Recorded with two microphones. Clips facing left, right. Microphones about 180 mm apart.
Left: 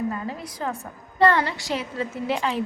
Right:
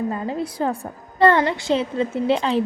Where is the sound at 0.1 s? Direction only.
30° right (ahead or behind).